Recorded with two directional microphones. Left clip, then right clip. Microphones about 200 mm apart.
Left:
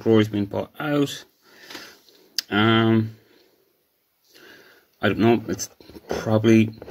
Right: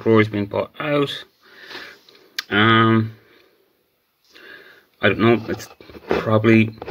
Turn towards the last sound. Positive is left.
turn(degrees=50)  # may be behind; listen again after turning